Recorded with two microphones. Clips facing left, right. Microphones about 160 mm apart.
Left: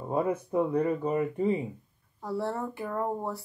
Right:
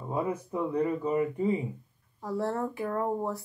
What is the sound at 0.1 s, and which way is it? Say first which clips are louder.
Speech: left 3 dB; 30° left (ahead or behind).